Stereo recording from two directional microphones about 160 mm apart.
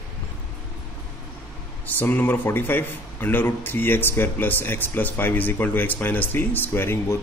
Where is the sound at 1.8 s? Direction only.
10° left (ahead or behind).